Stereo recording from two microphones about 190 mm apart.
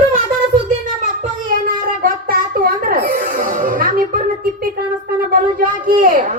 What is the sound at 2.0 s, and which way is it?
Music, 50° right (ahead or behind).